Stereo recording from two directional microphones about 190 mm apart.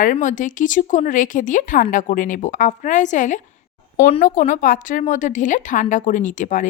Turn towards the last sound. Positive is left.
turn(degrees=40)  # may be behind; listen again after turning